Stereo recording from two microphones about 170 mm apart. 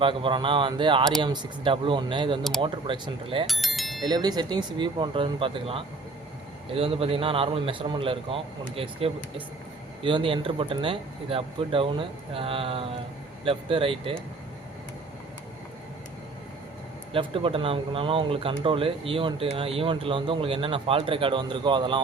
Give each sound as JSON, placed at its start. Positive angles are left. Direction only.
{"t": 0.0, "sound": "speech", "side_deg": -30}
{"t": 3.4, "sound": "bicycle bell", "side_deg": 0}
{"t": 4.0, "sound": "speech", "side_deg": -25}
{"t": 17.1, "sound": "speech", "side_deg": -30}